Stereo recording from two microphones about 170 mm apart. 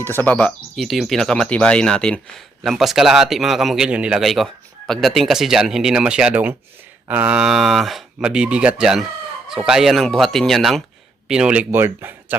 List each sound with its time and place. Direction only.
0.0 s speech: 10° left (ahead or behind); by 12.4 s 10° right (ahead or behind)